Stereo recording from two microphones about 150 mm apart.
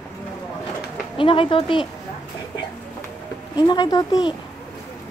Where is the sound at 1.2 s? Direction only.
35° left (ahead or behind).